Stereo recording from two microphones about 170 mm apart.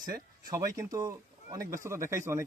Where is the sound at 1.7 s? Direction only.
15° right (ahead or behind).